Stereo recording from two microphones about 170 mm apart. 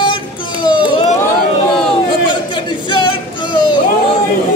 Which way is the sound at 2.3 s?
30° left (ahead or behind).